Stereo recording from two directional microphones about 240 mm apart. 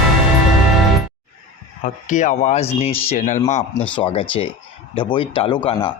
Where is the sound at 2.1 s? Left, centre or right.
Left.